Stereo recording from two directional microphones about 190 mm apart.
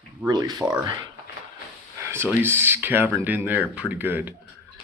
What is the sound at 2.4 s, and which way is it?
Speech, 10° right (ahead or behind).